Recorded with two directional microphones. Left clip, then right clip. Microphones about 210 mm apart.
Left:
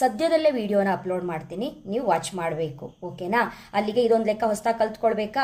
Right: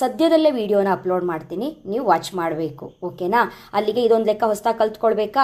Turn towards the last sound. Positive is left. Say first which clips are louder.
# right 5 dB
turn(degrees=-20)  # may be behind; listen again after turning